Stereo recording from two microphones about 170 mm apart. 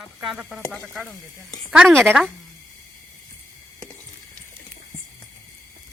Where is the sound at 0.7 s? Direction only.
10° left (ahead or behind).